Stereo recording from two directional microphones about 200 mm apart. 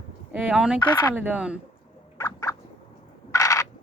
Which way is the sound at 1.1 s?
10° right (ahead or behind).